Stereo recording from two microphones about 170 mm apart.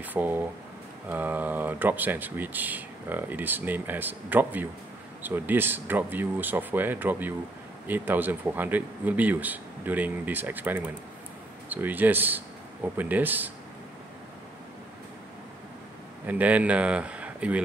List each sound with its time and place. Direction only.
0.0 s speech: 10° right (ahead or behind)
16.3 s speech: 10° right (ahead or behind)